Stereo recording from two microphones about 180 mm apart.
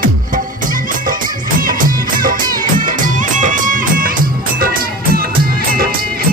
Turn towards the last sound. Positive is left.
turn(degrees=-55)  # may be behind; listen again after turning